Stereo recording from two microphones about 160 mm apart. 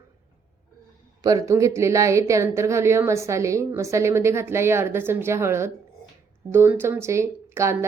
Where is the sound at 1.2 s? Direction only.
25° right (ahead or behind).